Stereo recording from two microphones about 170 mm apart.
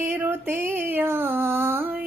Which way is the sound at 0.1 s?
15° right (ahead or behind).